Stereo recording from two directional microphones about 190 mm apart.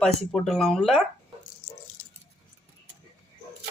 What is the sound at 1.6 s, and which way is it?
Rattle, 65° left (ahead or behind).